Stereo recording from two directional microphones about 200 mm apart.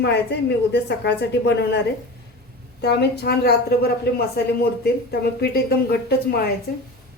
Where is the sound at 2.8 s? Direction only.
55° left (ahead or behind).